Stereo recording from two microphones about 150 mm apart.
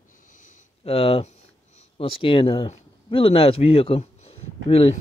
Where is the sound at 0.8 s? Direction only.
40° left (ahead or behind).